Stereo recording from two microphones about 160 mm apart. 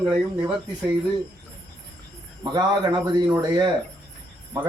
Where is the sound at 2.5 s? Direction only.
25° right (ahead or behind).